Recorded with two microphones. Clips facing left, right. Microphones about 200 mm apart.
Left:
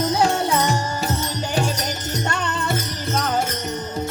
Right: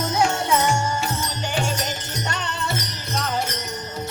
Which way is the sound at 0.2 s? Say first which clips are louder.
Left 1 dB; 35° left (ahead or behind).